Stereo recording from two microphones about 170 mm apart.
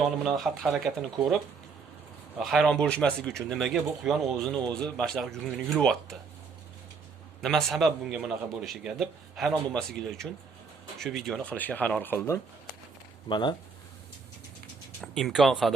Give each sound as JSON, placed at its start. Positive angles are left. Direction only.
{"t": 0.0, "sound": "a man's voice", "side_deg": 0}
{"t": 2.4, "sound": "a man's voice", "side_deg": 0}
{"t": 7.4, "sound": "a man's voice", "side_deg": 0}
{"t": 13.2, "sound": "speech", "side_deg": 25}
{"t": 15.0, "sound": "a man's voice", "side_deg": 0}